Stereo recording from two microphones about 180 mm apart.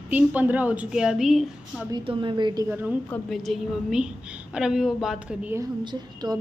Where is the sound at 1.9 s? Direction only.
30° right (ahead or behind).